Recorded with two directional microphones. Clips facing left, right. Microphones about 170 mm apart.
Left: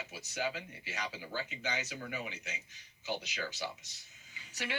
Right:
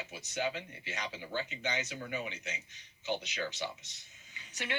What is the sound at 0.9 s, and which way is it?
Speech, 20° right (ahead or behind).